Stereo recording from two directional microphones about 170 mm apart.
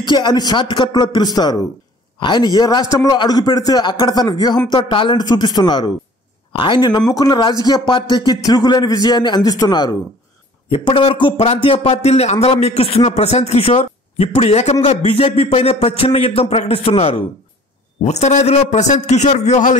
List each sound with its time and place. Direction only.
0.0 s a man's voice: 25° left (ahead or behind); by 19.8 s 45° left (ahead or behind)